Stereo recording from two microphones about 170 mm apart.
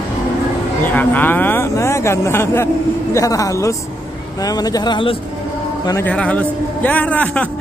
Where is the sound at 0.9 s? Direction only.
10° left (ahead or behind); by 5.1 s 25° left (ahead or behind).